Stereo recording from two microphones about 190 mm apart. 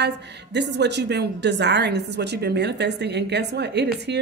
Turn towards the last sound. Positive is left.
turn(degrees=-60)  # may be behind; listen again after turning